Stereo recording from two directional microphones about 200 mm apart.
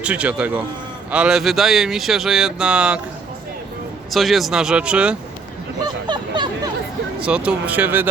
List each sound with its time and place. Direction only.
0.0 s a man's voice: 5° right (ahead or behind)
4.1 s speech: centre (ahead or behind)
6.1 s a sound: 20° right (ahead or behind)
7.2 s a man's voice: 5° right (ahead or behind)